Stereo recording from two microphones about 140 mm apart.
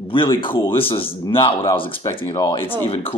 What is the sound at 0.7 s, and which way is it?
A man's voice, 40° left (ahead or behind).